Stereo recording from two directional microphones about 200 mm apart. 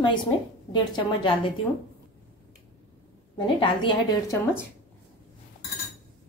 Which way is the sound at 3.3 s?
25° left (ahead or behind).